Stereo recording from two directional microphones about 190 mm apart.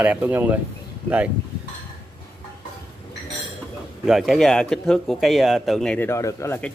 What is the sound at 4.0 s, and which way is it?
Speech, centre (ahead or behind).